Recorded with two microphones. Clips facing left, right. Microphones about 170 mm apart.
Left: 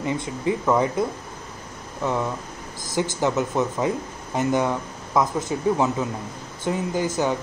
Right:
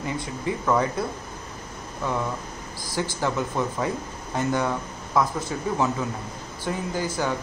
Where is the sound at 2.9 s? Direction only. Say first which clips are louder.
Left 4 dB; 20° left (ahead or behind).